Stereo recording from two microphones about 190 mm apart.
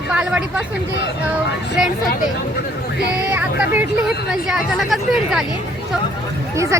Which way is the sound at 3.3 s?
10° right (ahead or behind).